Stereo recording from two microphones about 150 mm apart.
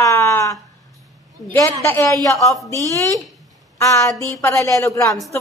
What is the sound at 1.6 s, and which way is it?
Speech, 15° left (ahead or behind).